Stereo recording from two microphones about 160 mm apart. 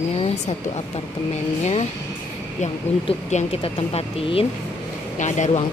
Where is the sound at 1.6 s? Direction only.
40° left (ahead or behind).